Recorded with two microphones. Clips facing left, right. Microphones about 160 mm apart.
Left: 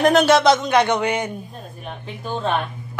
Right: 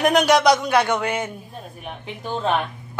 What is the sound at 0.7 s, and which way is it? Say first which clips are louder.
Speech: left 2 dB; 10° right (ahead or behind).